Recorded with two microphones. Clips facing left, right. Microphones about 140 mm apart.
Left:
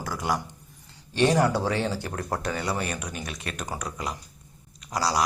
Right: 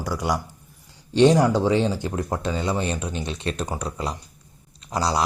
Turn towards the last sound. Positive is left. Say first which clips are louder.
# right 2 dB
turn(degrees=-30)  # may be behind; listen again after turning